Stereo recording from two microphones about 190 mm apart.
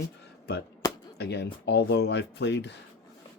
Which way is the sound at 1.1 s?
60° left (ahead or behind).